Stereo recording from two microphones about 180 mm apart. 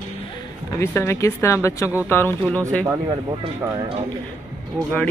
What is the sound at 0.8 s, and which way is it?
Speech, 15° left (ahead or behind).